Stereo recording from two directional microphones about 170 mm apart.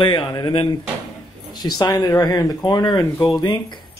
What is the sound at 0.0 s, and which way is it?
Speech, 25° left (ahead or behind).